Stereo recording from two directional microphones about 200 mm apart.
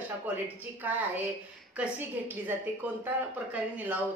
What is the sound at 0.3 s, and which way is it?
A woman's voice, 10° right (ahead or behind).